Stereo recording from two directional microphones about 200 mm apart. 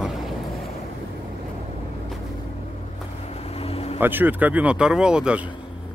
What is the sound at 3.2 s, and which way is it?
Vehicle, 30° left (ahead or behind).